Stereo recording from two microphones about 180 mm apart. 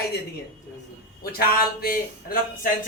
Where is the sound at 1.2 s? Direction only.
55° left (ahead or behind).